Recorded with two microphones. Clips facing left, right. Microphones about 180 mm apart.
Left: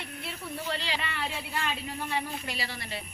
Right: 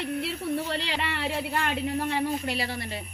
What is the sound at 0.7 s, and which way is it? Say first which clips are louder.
Speech: right 4 dB; 65° right (ahead or behind).